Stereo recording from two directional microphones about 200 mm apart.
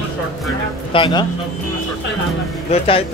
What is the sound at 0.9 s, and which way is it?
Speech, 25° left (ahead or behind).